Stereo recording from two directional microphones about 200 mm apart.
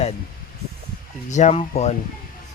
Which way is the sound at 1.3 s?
35° left (ahead or behind).